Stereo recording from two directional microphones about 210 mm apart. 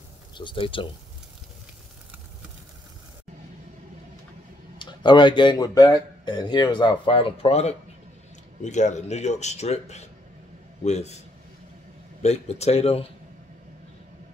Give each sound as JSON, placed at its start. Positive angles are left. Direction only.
{"t": 0.4, "sound": "speech", "side_deg": 25}
{"t": 4.7, "sound": "speech", "side_deg": 20}
{"t": 12.2, "sound": "speech", "side_deg": 30}